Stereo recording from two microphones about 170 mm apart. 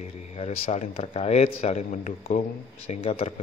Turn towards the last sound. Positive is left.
turn(degrees=40)  # may be behind; listen again after turning